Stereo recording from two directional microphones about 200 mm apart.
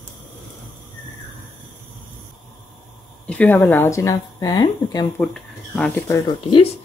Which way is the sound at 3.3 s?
5° left (ahead or behind).